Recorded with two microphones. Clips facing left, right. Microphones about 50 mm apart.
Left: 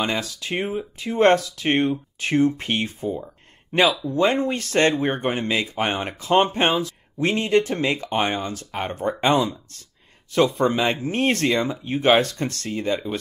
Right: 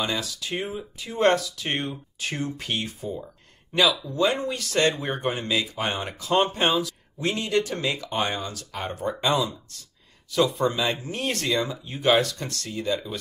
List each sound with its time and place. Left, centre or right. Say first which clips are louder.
0.0 s speech: left 3 dB; left